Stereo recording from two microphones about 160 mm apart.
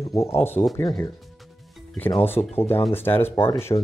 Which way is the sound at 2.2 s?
15° left (ahead or behind).